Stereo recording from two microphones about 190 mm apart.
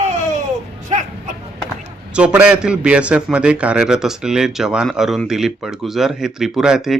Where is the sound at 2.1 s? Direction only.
5° right (ahead or behind).